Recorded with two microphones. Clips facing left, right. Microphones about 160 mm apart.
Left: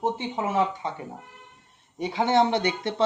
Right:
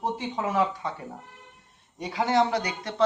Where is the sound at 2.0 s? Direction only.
25° left (ahead or behind).